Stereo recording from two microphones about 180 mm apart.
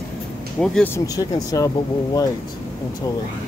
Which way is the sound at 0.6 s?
5° left (ahead or behind).